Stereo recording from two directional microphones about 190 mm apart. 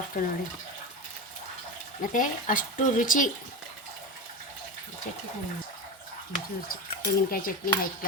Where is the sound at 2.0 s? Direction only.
45° left (ahead or behind).